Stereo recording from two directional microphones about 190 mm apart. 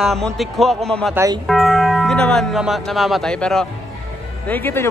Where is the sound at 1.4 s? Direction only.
Centre (ahead or behind).